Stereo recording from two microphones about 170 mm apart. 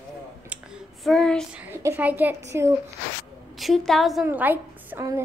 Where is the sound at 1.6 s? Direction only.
15° right (ahead or behind).